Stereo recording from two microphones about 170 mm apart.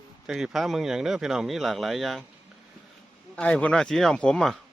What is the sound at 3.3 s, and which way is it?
Speech, 5° left (ahead or behind).